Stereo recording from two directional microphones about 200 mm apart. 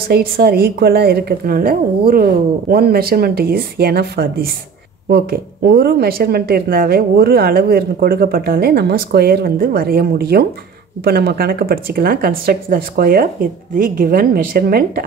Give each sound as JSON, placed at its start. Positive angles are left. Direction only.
{"t": 0.1, "sound": "speech", "side_deg": -50}